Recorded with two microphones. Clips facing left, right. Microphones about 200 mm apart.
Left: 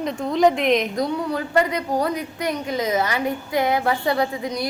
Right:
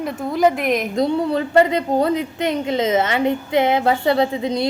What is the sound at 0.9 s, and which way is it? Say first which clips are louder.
A woman's voice: right 5 dB; 25° right (ahead or behind).